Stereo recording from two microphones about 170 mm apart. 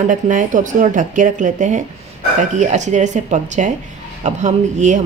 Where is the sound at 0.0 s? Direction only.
50° right (ahead or behind).